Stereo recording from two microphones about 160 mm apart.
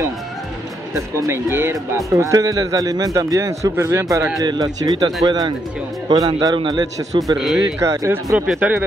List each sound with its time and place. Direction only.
1.2 s a man's voice: 15° right (ahead or behind)
7.3 s speech: 5° right (ahead or behind)
7.8 s a man's voice: 20° right (ahead or behind)